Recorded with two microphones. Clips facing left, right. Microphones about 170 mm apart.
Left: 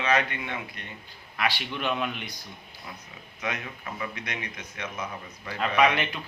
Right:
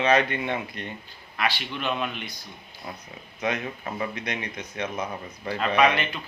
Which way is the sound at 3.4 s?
35° right (ahead or behind).